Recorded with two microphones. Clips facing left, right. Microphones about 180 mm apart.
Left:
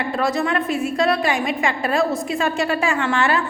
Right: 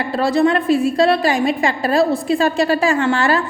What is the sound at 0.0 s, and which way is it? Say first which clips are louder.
A woman's voice: right 6 dB; 30° right (ahead or behind).